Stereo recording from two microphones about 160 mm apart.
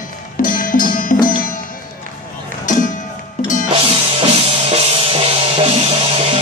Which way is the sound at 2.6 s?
55° left (ahead or behind).